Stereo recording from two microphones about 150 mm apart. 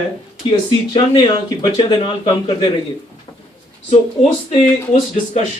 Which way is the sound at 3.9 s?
45° left (ahead or behind).